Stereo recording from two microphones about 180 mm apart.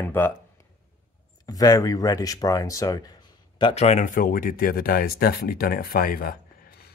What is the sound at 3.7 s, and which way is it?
Speech, 35° left (ahead or behind).